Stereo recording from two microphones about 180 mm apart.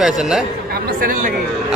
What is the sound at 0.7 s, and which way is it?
Speech, 55° right (ahead or behind).